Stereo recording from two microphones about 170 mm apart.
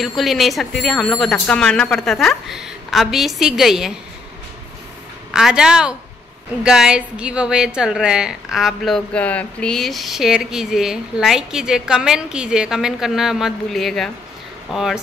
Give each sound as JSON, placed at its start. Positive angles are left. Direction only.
{"t": 0.0, "sound": "a woman's voice", "side_deg": 0}
{"t": 5.3, "sound": "a woman's voice", "side_deg": -5}